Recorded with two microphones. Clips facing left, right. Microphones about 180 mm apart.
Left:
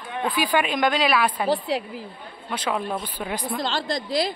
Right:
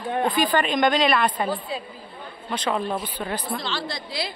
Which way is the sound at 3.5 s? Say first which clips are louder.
Left 4 dB; 45° left (ahead or behind).